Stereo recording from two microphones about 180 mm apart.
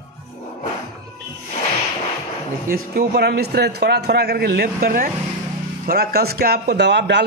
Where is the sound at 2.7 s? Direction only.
60° right (ahead or behind).